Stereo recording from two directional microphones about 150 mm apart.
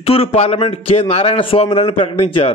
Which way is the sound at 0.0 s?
40° left (ahead or behind).